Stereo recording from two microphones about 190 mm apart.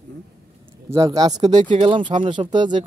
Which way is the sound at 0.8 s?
20° right (ahead or behind).